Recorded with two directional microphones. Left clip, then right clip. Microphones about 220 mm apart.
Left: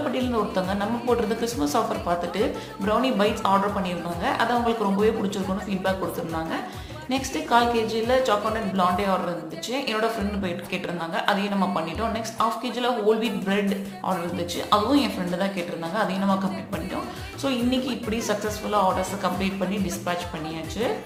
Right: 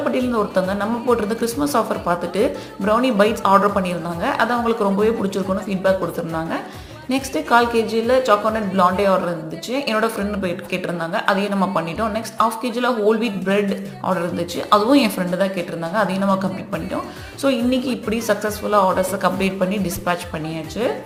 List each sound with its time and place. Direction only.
0.1 s a woman's voice: 25° right (ahead or behind)
7.1 s a woman's voice: 25° right (ahead or behind)